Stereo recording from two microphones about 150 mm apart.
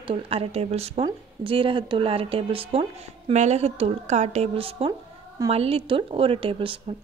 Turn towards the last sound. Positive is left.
turn(degrees=-35)  # may be behind; listen again after turning